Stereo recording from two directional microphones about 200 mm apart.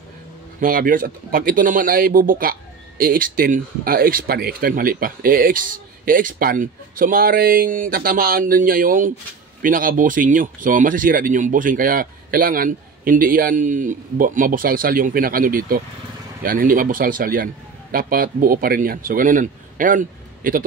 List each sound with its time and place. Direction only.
0.6 s speech: 45° right (ahead or behind)